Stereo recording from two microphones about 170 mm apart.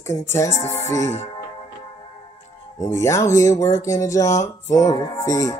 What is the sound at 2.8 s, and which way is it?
Speech, 15° left (ahead or behind).